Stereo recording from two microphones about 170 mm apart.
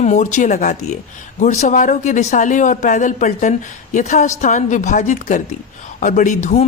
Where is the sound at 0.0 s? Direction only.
45° left (ahead or behind).